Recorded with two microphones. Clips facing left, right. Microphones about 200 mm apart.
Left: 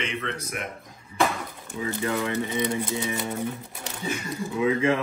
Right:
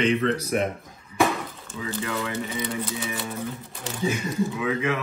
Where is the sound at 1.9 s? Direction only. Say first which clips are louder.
Left 2 dB; 20° left (ahead or behind).